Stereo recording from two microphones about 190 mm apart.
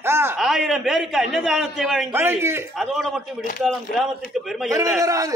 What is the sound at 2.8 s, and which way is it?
Speech, centre (ahead or behind).